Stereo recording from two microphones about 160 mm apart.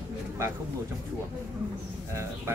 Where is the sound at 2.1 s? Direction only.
15° right (ahead or behind).